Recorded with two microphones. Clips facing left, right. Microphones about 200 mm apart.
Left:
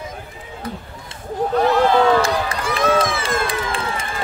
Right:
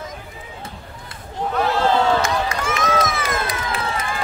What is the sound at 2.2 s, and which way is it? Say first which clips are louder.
Run: left 1 dB; 35° left (ahead or behind).